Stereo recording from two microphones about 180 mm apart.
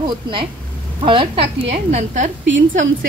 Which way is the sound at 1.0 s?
30° right (ahead or behind).